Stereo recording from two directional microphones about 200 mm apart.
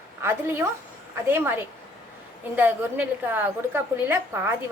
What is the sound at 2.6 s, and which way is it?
A woman's voice, 10° right (ahead or behind).